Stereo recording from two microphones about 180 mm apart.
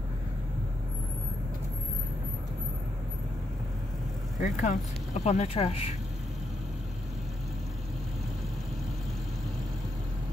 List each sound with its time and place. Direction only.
4.4 s speech: 45° left (ahead or behind)